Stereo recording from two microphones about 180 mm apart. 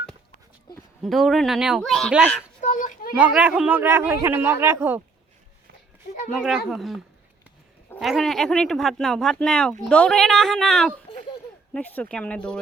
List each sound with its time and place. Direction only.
1.0 s speech: centre (ahead or behind)
2.6 s children playing: 45° left (ahead or behind)
3.2 s a man's voice: 5° right (ahead or behind)
6.3 s speech: centre (ahead or behind)